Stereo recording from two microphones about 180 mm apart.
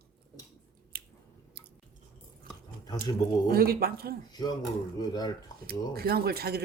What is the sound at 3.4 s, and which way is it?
Speech, 55° right (ahead or behind).